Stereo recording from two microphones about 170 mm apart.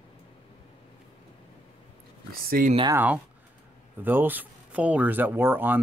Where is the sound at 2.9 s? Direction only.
10° right (ahead or behind).